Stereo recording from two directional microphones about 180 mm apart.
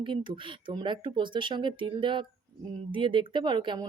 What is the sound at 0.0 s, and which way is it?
Speech, 25° right (ahead or behind).